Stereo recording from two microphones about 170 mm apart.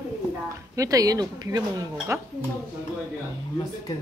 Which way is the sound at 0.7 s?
20° right (ahead or behind).